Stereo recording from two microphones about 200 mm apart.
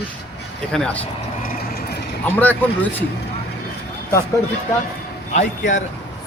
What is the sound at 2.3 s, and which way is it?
Speech, 10° left (ahead or behind).